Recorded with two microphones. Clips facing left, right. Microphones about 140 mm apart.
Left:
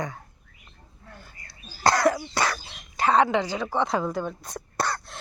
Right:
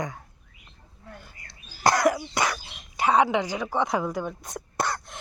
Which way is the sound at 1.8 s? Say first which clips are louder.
Even; 20° right (ahead or behind).